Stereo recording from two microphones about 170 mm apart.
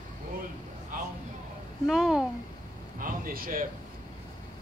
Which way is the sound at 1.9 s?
Centre (ahead or behind).